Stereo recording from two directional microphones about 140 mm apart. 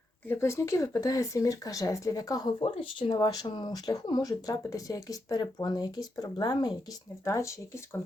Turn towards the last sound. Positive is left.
turn(degrees=20)  # may be behind; listen again after turning